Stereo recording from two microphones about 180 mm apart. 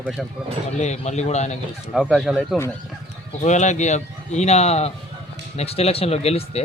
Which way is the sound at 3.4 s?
40° left (ahead or behind).